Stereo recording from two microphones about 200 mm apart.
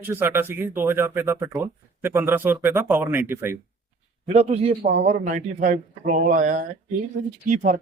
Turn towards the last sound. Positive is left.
turn(degrees=-40)  # may be behind; listen again after turning